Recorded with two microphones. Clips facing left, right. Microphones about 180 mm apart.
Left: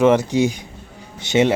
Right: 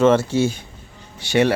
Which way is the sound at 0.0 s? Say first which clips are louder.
Left 1 dB; 15° left (ahead or behind).